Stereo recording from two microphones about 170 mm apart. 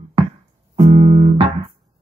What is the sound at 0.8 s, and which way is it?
Music, 35° right (ahead or behind).